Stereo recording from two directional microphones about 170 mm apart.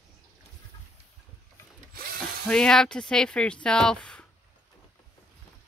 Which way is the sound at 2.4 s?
5° left (ahead or behind).